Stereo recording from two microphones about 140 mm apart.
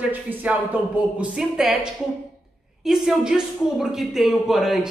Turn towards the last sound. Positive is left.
turn(degrees=0)  # may be behind; listen again after turning